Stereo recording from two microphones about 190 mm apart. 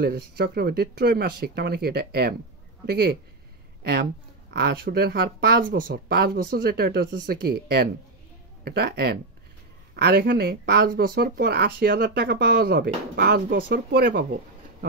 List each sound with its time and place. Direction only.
0.0 s speech: 55° right (ahead or behind)